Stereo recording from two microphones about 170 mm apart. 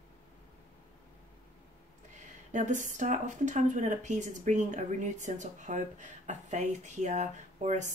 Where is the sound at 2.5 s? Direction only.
45° right (ahead or behind).